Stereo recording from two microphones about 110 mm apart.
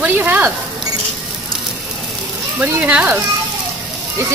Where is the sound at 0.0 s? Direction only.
15° right (ahead or behind).